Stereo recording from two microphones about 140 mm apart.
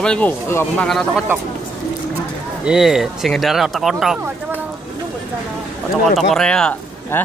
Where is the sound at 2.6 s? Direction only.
5° right (ahead or behind).